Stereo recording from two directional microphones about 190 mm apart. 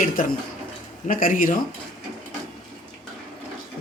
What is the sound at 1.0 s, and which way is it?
Speech, 45° left (ahead or behind).